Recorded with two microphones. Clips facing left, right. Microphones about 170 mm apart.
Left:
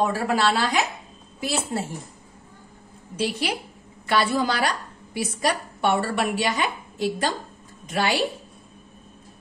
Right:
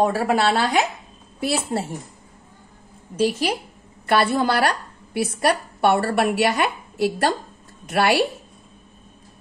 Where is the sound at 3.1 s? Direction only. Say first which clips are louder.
Right 5 dB; 45° right (ahead or behind).